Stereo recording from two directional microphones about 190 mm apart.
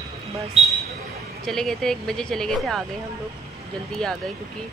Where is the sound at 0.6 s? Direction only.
35° right (ahead or behind).